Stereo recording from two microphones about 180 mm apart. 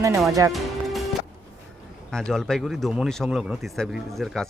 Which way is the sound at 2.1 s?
5° left (ahead or behind).